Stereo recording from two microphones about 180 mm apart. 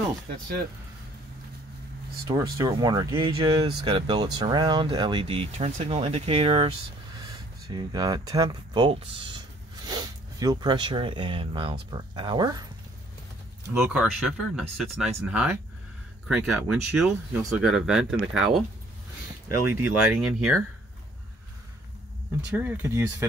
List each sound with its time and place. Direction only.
2.2 s speech: 20° right (ahead or behind)
13.7 s speech: 10° right (ahead or behind)
19.7 s speech: 5° right (ahead or behind)
22.6 s speech: 15° right (ahead or behind)